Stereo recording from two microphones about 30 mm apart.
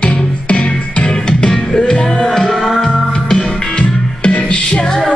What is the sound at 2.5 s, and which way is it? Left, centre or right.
Music, centre.